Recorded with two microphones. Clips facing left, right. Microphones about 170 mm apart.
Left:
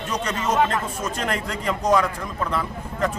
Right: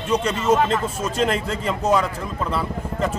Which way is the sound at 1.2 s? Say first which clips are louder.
Right 5 dB; 25° right (ahead or behind).